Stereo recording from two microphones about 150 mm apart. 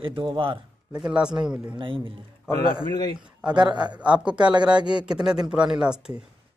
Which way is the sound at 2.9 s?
25° left (ahead or behind).